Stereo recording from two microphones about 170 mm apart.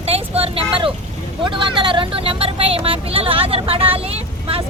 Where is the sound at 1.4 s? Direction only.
30° right (ahead or behind).